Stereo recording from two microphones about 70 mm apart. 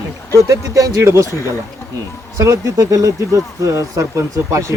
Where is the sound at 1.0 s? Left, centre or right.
Right.